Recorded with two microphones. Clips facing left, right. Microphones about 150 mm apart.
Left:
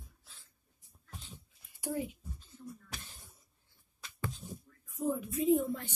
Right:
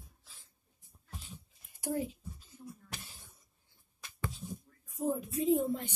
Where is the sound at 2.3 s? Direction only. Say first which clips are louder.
Left 1 dB; 10° right (ahead or behind).